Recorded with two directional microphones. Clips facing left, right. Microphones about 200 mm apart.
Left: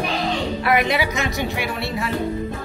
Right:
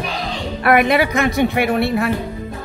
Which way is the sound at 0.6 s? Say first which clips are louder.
Right 7 dB; 55° right (ahead or behind).